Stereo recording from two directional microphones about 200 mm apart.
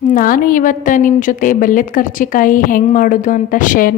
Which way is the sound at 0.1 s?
45° left (ahead or behind).